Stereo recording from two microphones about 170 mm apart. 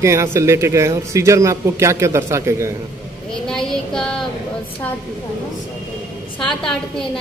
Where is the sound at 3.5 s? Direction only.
5° left (ahead or behind).